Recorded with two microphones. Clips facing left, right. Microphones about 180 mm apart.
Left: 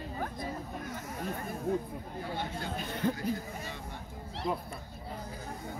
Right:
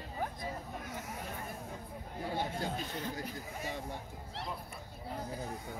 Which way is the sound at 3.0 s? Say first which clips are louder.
Left 10 dB; 55° left (ahead or behind).